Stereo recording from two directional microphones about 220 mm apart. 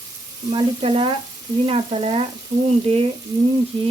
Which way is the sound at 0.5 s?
25° right (ahead or behind).